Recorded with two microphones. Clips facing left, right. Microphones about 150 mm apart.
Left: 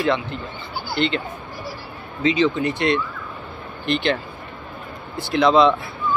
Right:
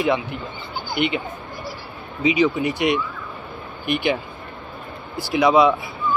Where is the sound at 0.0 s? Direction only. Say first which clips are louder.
Even; 15° right (ahead or behind).